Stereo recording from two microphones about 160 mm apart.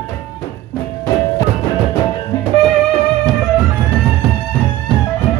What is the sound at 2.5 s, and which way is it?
Music, 35° right (ahead or behind).